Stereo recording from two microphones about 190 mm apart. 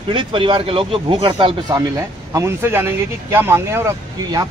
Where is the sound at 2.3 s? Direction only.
15° right (ahead or behind).